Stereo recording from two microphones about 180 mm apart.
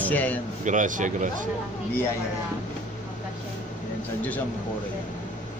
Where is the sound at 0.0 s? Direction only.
10° left (ahead or behind).